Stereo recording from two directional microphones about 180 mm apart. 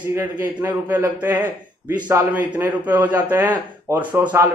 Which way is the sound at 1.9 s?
25° right (ahead or behind).